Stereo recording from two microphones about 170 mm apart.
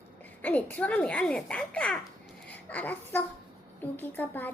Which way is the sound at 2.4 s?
10° left (ahead or behind).